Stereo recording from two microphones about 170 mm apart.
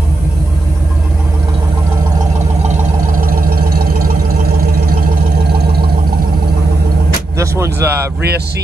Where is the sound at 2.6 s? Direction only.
50° right (ahead or behind).